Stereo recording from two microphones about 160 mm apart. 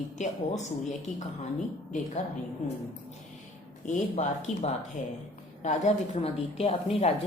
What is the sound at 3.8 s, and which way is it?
A woman's voice, 50° left (ahead or behind).